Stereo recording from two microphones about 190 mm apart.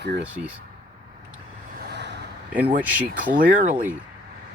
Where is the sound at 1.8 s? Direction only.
60° right (ahead or behind).